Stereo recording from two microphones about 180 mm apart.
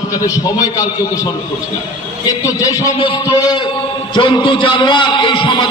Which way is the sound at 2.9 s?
30° left (ahead or behind).